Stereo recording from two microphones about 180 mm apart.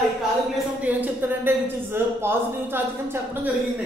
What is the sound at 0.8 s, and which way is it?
A woman's voice, 10° right (ahead or behind).